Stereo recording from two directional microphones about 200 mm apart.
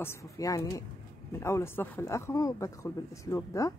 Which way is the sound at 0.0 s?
15° left (ahead or behind).